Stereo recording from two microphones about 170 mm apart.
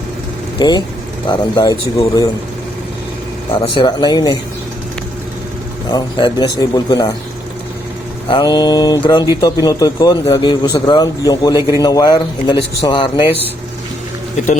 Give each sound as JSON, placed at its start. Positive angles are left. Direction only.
{"t": 0.6, "sound": "a man's voice", "side_deg": 25}
{"t": 3.5, "sound": "a man's voice", "side_deg": 30}
{"t": 5.9, "sound": "a man's voice", "side_deg": 25}
{"t": 8.3, "sound": "a man's voice", "side_deg": 25}